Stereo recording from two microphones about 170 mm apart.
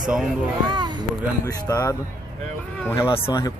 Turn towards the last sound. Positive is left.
turn(degrees=25)  # may be behind; listen again after turning